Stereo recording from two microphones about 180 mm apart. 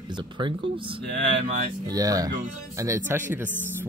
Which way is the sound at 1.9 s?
20° right (ahead or behind).